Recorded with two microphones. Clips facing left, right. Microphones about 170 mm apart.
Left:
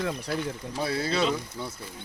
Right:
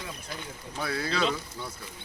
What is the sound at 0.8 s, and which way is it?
Speech, 25° left (ahead or behind).